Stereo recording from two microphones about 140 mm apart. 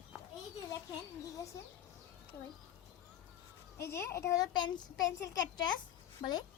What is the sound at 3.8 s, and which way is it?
A child's voice, 20° left (ahead or behind).